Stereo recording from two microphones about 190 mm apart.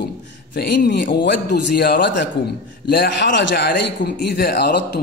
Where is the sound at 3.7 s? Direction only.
60° left (ahead or behind).